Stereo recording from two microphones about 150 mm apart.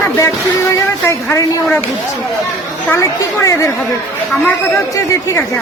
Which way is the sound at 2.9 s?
20° left (ahead or behind).